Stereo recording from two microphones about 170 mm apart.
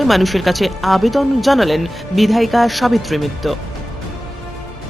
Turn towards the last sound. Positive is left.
turn(degrees=0)  # may be behind; listen again after turning